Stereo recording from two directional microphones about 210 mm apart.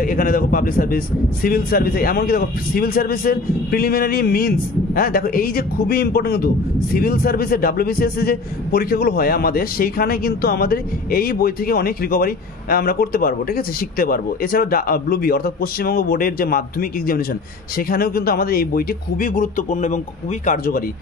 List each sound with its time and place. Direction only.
0.0 s a man's voice: 45° left (ahead or behind)